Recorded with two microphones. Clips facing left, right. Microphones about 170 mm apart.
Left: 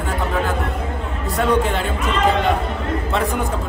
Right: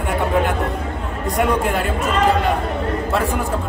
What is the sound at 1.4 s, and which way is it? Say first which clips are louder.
Speech: left 1 dB; 10° right (ahead or behind).